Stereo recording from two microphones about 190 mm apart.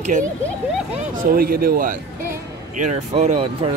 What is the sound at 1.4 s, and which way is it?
Speech, 50° right (ahead or behind).